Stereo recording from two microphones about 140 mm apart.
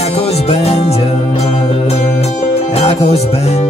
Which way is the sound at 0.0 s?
45° left (ahead or behind).